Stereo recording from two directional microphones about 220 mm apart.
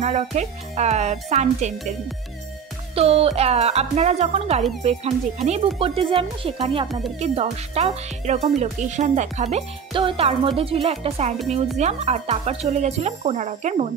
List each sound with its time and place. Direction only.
0.0 s speech: 30° right (ahead or behind)